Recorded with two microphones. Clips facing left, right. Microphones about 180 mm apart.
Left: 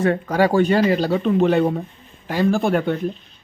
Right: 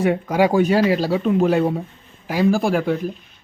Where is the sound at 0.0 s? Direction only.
10° right (ahead or behind).